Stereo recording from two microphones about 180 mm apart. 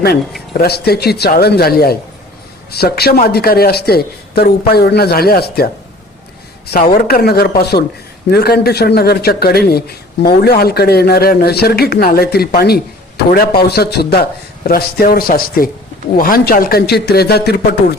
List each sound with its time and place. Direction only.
0.5 s a man's voice: 60° left (ahead or behind)